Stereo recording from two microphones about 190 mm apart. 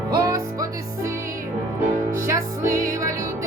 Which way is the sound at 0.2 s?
20° right (ahead or behind).